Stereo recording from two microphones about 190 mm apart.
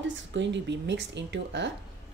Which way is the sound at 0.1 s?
70° right (ahead or behind).